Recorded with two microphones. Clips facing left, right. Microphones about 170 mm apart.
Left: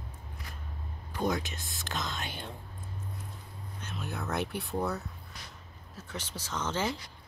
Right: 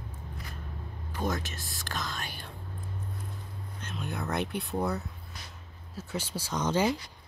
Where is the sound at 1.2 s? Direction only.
15° left (ahead or behind).